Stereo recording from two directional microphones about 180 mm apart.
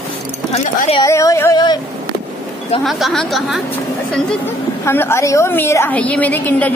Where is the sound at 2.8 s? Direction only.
Centre (ahead or behind).